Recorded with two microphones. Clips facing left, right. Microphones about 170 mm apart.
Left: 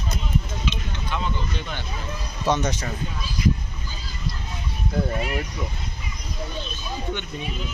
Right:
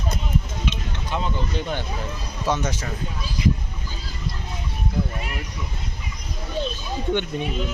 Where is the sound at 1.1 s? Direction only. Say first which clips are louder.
Right 3 dB; 40° right (ahead or behind).